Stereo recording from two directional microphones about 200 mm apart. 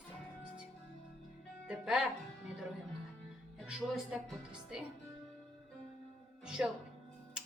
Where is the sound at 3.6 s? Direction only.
5° right (ahead or behind).